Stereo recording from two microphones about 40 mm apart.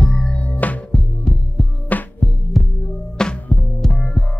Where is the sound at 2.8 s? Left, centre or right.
Left.